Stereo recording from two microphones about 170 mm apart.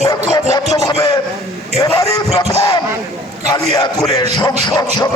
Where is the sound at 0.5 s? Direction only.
20° left (ahead or behind).